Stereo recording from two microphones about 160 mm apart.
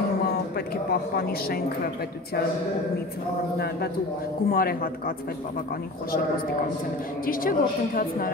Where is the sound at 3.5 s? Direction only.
90° left.